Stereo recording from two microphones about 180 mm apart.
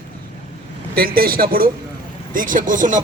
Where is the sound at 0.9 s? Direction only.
55° right (ahead or behind).